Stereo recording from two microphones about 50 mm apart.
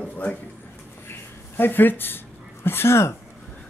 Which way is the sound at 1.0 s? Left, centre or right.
Left.